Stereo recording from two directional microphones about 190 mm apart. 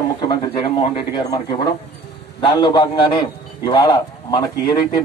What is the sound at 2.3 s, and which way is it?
A man's voice, 25° left (ahead or behind).